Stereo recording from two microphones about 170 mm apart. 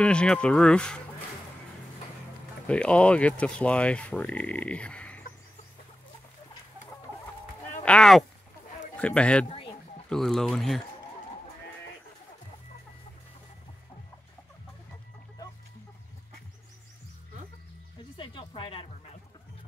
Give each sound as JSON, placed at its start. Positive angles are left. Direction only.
{"t": 0.0, "sound": "speech", "side_deg": 5}
{"t": 2.6, "sound": "speech", "side_deg": 5}
{"t": 7.8, "sound": "speech", "side_deg": 5}
{"t": 18.1, "sound": "a sound", "side_deg": 30}